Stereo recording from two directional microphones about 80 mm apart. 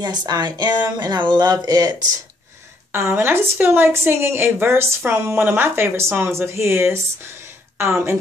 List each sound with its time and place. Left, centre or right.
0.0 s speech: right
2.9 s speech: right